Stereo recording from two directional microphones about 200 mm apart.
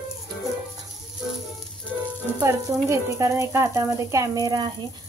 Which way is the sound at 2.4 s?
20° right (ahead or behind).